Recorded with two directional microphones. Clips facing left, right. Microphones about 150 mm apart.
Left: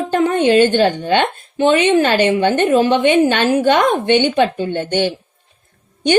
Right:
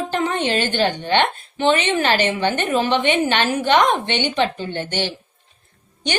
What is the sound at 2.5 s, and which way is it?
A woman's voice, 50° left (ahead or behind).